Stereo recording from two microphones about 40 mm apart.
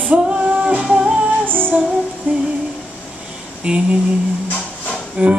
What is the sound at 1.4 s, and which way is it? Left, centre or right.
Music, right.